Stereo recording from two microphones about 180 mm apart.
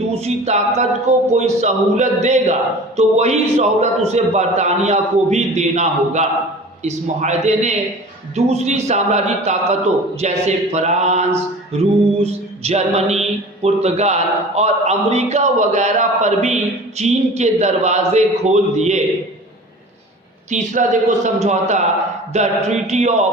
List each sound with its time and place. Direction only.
0.1 s speech: 35° right (ahead or behind)
20.5 s speech: 40° right (ahead or behind)